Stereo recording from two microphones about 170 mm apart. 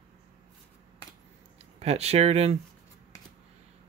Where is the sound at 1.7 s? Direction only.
40° right (ahead or behind).